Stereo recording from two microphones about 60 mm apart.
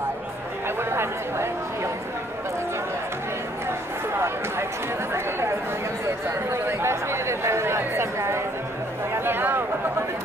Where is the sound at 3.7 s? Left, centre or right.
Right.